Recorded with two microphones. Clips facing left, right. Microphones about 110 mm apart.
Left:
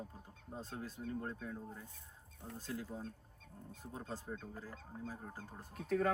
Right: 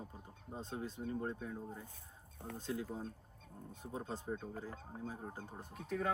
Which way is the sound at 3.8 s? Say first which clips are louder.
Right 3 dB; 20° right (ahead or behind).